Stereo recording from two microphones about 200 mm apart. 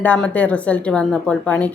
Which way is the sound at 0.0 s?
5° left (ahead or behind).